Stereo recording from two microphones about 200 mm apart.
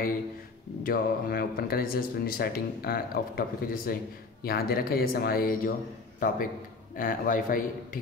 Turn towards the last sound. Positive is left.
turn(degrees=45)  # may be behind; listen again after turning